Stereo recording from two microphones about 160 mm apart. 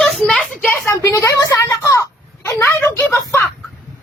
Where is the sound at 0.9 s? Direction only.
20° left (ahead or behind).